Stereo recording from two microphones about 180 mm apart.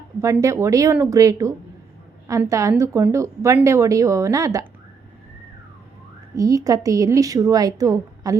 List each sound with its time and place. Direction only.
0.2 s a woman's voice: 15° right (ahead or behind)
6.3 s a woman's voice: 20° right (ahead or behind)